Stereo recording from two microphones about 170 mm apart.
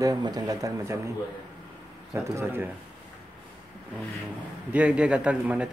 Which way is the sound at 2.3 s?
10° right (ahead or behind).